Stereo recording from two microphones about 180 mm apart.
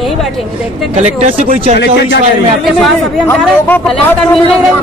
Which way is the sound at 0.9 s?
40° right (ahead or behind).